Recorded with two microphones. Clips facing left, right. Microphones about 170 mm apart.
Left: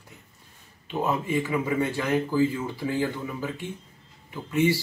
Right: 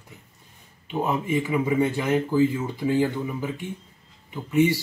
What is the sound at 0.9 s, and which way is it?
Speech, 15° right (ahead or behind).